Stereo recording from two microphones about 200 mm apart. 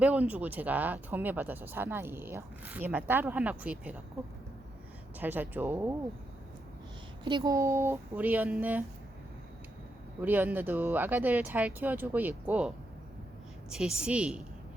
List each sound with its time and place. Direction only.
0.0 s speech: 5° right (ahead or behind)
5.2 s speech: 10° right (ahead or behind)
7.3 s speech: 20° right (ahead or behind)
10.2 s a woman's voice: 10° right (ahead or behind)